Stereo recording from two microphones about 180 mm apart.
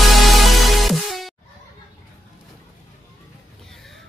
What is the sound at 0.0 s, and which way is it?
Music, centre (ahead or behind).